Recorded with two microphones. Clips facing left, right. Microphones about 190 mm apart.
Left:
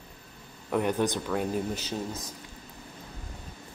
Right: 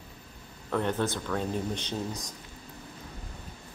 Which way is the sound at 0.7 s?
15° left (ahead or behind).